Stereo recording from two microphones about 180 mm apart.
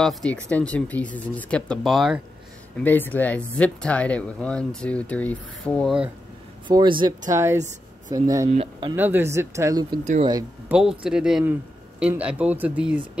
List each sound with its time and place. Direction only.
0.0 s speech: 5° left (ahead or behind)
2.8 s speech: 10° left (ahead or behind)
6.7 s speech: 25° right (ahead or behind)
8.5 s speech: 30° right (ahead or behind)
8.9 s speech: 10° right (ahead or behind)
10.7 s speech: 5° right (ahead or behind)